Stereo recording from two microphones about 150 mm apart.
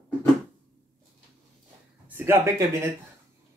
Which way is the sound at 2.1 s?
15° right (ahead or behind).